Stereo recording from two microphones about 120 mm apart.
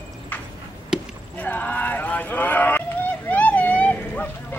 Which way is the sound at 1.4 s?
15° left (ahead or behind).